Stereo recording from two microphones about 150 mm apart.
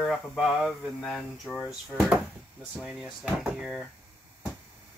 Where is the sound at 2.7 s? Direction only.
5° right (ahead or behind).